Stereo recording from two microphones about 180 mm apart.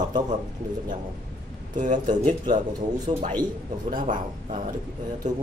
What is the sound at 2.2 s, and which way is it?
Speech, 25° right (ahead or behind).